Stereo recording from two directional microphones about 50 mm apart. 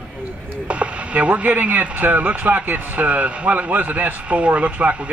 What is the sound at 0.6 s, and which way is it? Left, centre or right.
Speech, right.